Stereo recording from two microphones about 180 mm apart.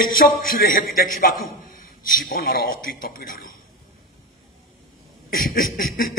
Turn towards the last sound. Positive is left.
turn(degrees=50)  # may be behind; listen again after turning